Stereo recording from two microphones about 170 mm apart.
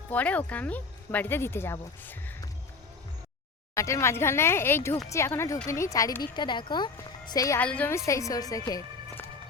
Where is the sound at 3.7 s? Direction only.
15° left (ahead or behind).